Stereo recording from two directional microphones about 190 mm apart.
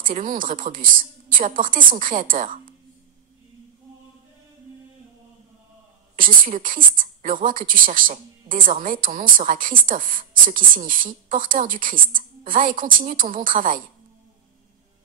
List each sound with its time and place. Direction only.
0.0 s a woman's voice: 45° right (ahead or behind)
6.1 s a woman's voice: 45° right (ahead or behind)